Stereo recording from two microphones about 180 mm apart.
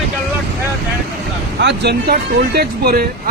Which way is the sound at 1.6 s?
65° right (ahead or behind).